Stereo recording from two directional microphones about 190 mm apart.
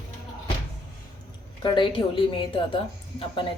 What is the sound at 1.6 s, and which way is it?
Speech, 25° left (ahead or behind).